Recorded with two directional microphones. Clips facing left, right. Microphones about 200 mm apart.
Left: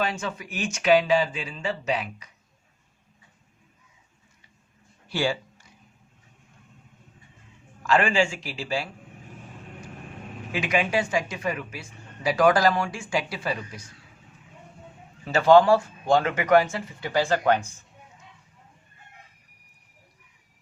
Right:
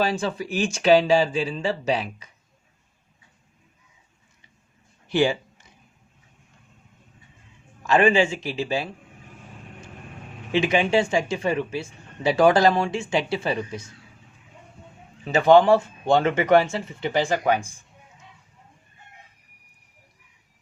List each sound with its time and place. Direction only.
0.0 s speech: 30° right (ahead or behind)
5.0 s speech: 20° right (ahead or behind)
7.8 s speech: 20° right (ahead or behind)
10.5 s speech: 25° right (ahead or behind)
15.2 s speech: 20° right (ahead or behind)